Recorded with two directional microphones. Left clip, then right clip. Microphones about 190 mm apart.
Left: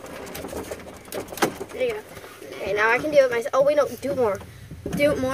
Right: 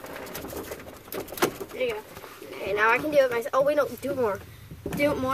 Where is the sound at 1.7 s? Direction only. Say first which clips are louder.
Left 5 dB; centre (ahead or behind).